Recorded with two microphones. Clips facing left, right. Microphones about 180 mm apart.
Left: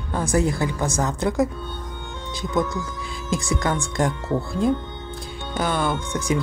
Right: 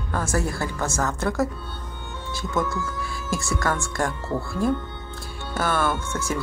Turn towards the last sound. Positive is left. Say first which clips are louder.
# left 3 dB
turn(degrees=15)  # may be behind; listen again after turning